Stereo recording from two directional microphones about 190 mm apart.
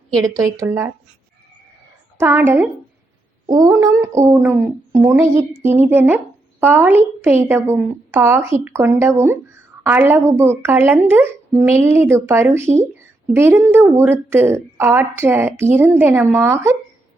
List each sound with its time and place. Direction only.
0.3 s a woman's voice: 15° right (ahead or behind)
2.1 s a woman's voice: 15° right (ahead or behind)